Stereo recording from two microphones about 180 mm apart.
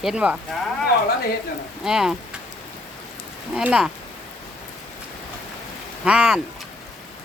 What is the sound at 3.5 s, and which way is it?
Speech, 5° right (ahead or behind).